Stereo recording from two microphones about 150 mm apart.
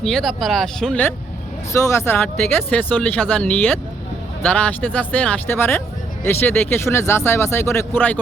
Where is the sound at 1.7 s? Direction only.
20° left (ahead or behind).